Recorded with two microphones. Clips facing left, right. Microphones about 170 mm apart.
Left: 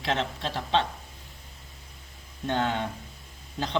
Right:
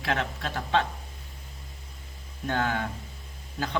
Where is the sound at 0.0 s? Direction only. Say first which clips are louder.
Left 1 dB; 25° left (ahead or behind).